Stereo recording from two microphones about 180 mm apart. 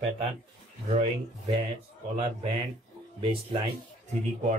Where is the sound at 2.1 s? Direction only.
35° right (ahead or behind).